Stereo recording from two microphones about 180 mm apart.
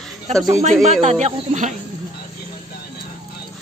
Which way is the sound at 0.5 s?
40° right (ahead or behind).